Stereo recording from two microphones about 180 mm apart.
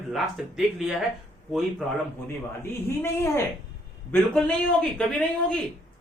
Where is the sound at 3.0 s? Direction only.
15° left (ahead or behind).